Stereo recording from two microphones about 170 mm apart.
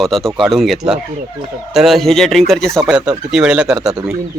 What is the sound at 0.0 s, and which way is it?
Speech, centre (ahead or behind).